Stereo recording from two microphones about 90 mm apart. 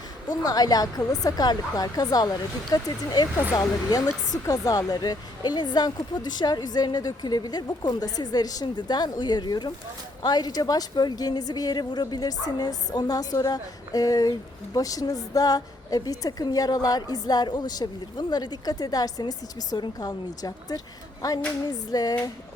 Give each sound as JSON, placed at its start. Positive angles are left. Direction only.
{"t": 0.3, "sound": "a woman's voice", "side_deg": 45}